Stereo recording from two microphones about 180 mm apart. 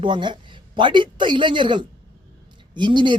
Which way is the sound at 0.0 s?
25° right (ahead or behind).